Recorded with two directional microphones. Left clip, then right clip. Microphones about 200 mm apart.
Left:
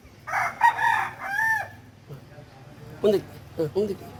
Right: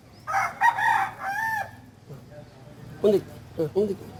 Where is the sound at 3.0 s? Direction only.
Centre (ahead or behind).